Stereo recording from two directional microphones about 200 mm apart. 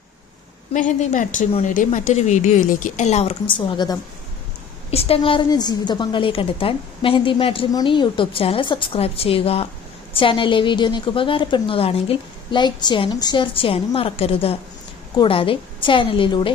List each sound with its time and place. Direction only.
0.7 s a woman's voice: 40° left (ahead or behind)